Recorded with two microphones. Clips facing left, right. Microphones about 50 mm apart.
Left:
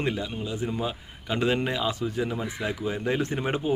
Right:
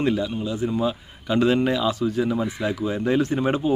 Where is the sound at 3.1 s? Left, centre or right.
Left.